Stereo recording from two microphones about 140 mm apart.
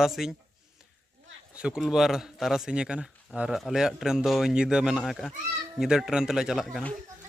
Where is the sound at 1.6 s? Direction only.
5° right (ahead or behind).